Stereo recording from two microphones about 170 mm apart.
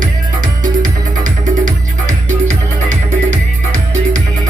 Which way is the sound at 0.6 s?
50° right (ahead or behind).